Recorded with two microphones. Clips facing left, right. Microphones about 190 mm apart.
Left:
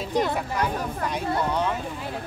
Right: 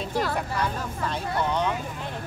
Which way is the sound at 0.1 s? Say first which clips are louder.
Left 4 dB; 20° left (ahead or behind).